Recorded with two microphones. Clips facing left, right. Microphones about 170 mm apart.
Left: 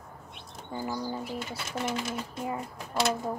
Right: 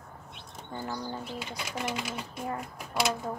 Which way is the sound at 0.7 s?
10° left (ahead or behind).